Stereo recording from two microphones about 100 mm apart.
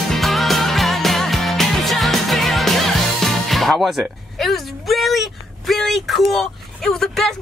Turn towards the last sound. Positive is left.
turn(degrees=5)  # may be behind; listen again after turning